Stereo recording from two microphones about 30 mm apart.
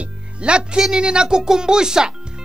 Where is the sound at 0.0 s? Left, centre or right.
Right.